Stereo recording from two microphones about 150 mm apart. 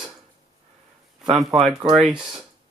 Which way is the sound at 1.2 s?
Centre (ahead or behind).